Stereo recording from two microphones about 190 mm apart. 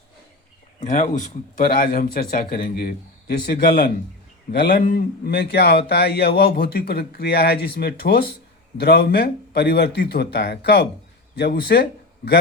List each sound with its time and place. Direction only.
0.8 s speech: 40° left (ahead or behind); by 12.4 s 60° left (ahead or behind)